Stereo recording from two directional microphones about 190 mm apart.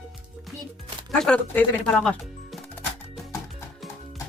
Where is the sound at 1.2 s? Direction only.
5° left (ahead or behind).